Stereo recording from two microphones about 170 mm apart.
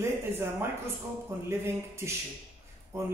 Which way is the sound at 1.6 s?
15° right (ahead or behind).